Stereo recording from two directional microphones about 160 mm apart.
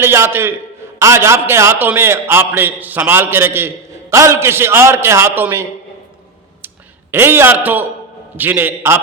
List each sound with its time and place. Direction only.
0.0 s a man's voice: 15° right (ahead or behind)
7.1 s a man's voice: 15° right (ahead or behind)